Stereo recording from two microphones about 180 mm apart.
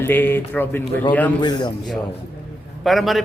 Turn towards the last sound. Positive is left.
turn(degrees=0)  # may be behind; listen again after turning